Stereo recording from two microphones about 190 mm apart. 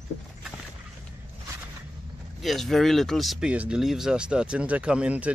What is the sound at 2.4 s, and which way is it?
Speech, centre (ahead or behind).